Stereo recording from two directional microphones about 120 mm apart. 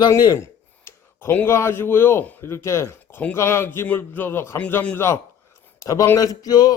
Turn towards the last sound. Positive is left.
turn(degrees=30)  # may be behind; listen again after turning